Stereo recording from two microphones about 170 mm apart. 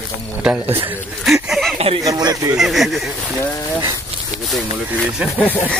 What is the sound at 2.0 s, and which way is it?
Speech, 20° right (ahead or behind).